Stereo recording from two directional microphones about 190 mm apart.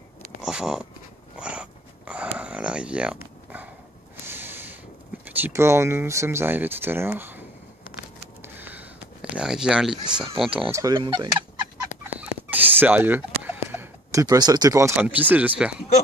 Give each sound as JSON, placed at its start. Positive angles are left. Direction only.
{"t": 0.4, "sound": "a sound", "side_deg": -5}
{"t": 4.3, "sound": "a sound", "side_deg": -10}
{"t": 5.2, "sound": "speech", "side_deg": -10}
{"t": 8.5, "sound": "speech", "side_deg": -10}
{"t": 10.7, "sound": "speech", "side_deg": -20}
{"t": 12.1, "sound": "fowl", "side_deg": -10}
{"t": 13.7, "sound": "speech", "side_deg": -15}